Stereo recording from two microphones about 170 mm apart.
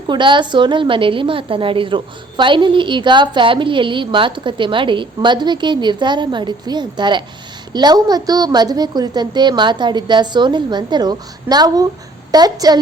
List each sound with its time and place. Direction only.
0.1 s a woman's voice: 30° right (ahead or behind)